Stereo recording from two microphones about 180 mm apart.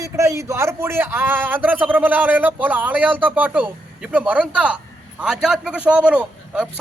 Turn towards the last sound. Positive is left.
turn(degrees=-5)  # may be behind; listen again after turning